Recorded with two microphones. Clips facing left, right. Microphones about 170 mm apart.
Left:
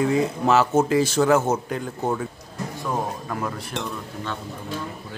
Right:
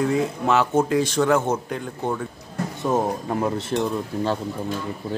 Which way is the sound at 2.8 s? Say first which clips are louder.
Right 6 dB; 25° right (ahead or behind).